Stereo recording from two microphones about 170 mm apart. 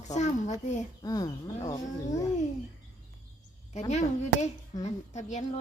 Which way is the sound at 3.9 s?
40° left (ahead or behind).